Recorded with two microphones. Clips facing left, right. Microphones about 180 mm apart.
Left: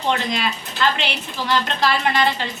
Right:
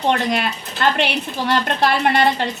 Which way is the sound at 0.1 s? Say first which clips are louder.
Right 2 dB; 55° right (ahead or behind).